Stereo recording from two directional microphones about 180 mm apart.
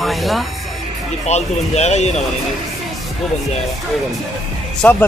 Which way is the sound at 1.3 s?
40° left (ahead or behind).